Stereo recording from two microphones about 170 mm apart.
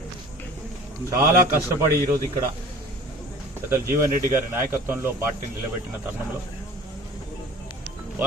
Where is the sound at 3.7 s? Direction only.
15° right (ahead or behind).